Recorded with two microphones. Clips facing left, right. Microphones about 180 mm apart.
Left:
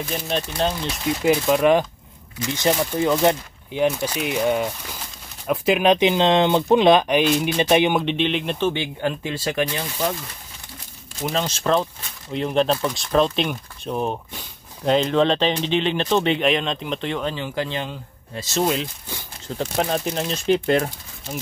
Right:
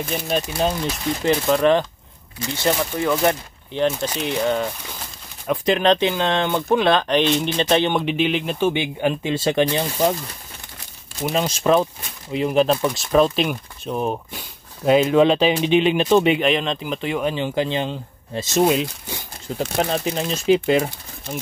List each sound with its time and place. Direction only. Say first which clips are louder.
0.1 s speech: right 3 dB; 5° right (ahead or behind)
1.2 s speech: even; 10° left (ahead or behind)
8.0 s speech: right 1 dB; 5° right (ahead or behind)
8.6 s speech: right 4 dB; 15° right (ahead or behind)
11.2 s speech: right 3 dB; 10° right (ahead or behind)
19.6 s speech: right 1 dB; 5° right (ahead or behind)